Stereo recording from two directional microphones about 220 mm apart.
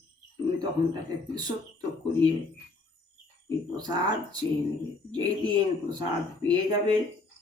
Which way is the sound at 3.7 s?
20° right (ahead or behind).